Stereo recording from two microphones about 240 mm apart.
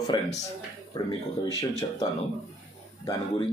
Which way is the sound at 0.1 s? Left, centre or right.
Centre.